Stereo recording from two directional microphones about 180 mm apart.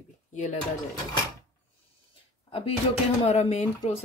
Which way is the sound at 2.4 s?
35° left (ahead or behind).